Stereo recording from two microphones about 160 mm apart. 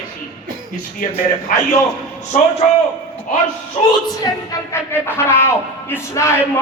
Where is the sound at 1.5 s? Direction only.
60° left (ahead or behind).